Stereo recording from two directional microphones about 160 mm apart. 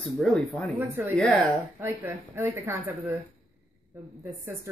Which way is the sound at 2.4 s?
15° right (ahead or behind).